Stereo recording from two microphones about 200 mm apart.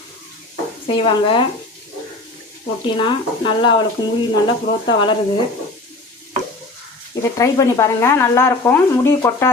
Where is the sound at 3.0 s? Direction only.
25° left (ahead or behind).